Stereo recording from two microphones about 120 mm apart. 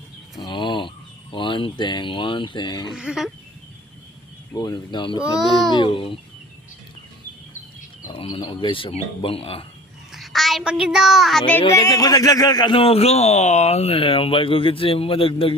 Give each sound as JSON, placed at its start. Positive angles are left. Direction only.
{"t": 0.3, "sound": "a sound", "side_deg": 40}
{"t": 2.9, "sound": "a sound", "side_deg": -5}
{"t": 4.5, "sound": "speech", "side_deg": 35}
{"t": 8.1, "sound": "speech", "side_deg": 50}
{"t": 10.1, "sound": "a woman's voice", "side_deg": 0}
{"t": 11.7, "sound": "speech", "side_deg": 30}